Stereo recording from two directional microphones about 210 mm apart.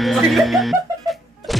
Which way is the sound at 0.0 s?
Centre (ahead or behind).